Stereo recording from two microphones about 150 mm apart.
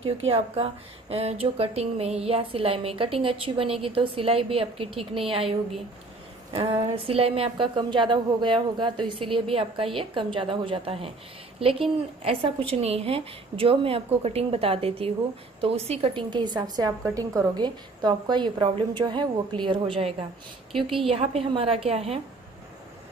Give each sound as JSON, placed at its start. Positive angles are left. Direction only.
{"t": 0.0, "sound": "a woman's voice", "side_deg": -40}
{"t": 6.5, "sound": "a woman's voice", "side_deg": -35}
{"t": 20.7, "sound": "a woman's voice", "side_deg": 0}
{"t": 21.1, "sound": "a woman's voice", "side_deg": -40}